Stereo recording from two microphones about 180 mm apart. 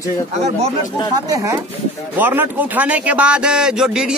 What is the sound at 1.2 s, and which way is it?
A man's voice, 20° right (ahead or behind).